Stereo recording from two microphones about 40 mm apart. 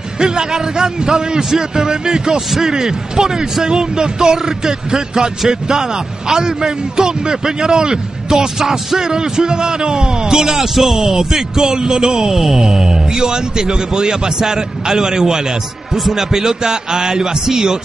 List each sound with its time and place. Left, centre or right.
0.2 s speech: centre